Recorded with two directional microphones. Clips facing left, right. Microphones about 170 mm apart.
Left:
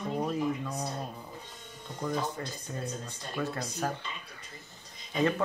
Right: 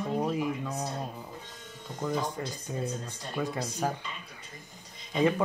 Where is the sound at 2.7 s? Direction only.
10° right (ahead or behind).